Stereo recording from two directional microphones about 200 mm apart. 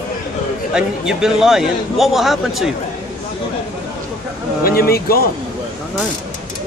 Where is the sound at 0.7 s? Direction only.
5° right (ahead or behind).